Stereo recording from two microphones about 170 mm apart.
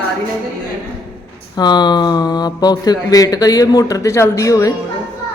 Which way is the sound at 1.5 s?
25° left (ahead or behind).